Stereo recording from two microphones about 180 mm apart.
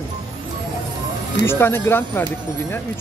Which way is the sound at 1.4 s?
15° left (ahead or behind).